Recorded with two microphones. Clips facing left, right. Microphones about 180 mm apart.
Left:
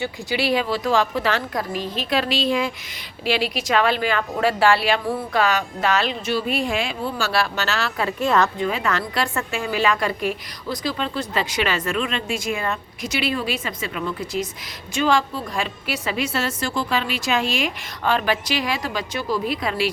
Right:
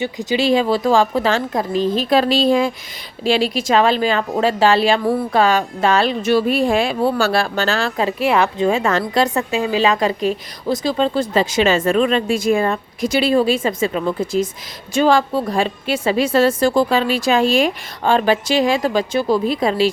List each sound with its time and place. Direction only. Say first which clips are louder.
0.0 s speech: right 5 dB; 20° right (ahead or behind)
2.0 s a woman's voice: right 6 dB; 35° right (ahead or behind)
7.1 s speech: right 6 dB; 55° right (ahead or behind)
8.5 s a woman's voice: right 6 dB; 25° right (ahead or behind)